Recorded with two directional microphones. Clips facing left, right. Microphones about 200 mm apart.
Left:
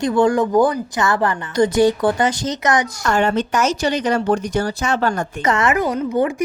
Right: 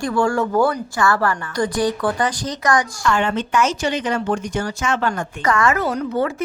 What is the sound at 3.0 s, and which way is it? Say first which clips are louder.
Speech: left 2 dB; 40° left (ahead or behind).